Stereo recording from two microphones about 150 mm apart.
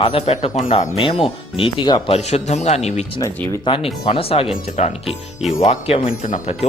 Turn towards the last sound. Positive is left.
turn(degrees=60)  # may be behind; listen again after turning